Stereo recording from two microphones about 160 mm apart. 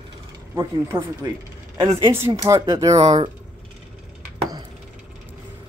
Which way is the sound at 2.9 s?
40° right (ahead or behind).